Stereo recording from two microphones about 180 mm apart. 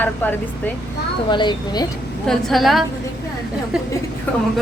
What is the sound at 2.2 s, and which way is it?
Speech, centre (ahead or behind).